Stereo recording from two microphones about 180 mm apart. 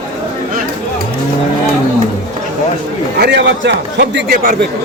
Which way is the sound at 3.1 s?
70° right (ahead or behind).